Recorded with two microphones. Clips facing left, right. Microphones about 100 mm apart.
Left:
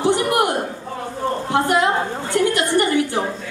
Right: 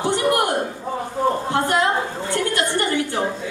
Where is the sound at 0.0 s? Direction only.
20° left (ahead or behind).